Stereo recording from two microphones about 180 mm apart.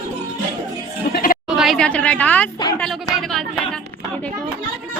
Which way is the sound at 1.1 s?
55° left (ahead or behind).